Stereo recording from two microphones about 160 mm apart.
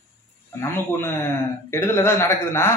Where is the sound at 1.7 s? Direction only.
15° left (ahead or behind).